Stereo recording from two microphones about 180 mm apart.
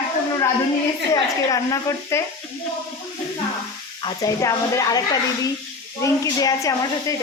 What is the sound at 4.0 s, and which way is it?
A woman's voice, 20° left (ahead or behind).